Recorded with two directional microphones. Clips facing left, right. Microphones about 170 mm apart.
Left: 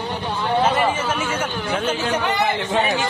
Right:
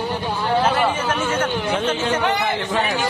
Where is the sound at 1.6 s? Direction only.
10° right (ahead or behind).